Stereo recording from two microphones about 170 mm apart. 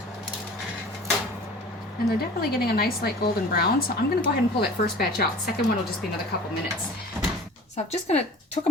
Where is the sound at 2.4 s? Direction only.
65° left (ahead or behind).